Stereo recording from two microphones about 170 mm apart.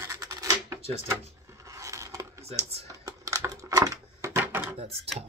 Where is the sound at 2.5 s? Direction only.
35° right (ahead or behind).